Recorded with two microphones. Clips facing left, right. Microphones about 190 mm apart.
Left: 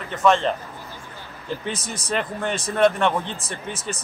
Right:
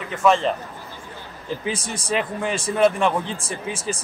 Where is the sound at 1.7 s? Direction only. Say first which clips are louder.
Right 2 dB; 30° right (ahead or behind).